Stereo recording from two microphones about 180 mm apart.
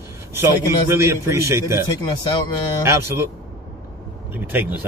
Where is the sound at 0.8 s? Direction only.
15° right (ahead or behind).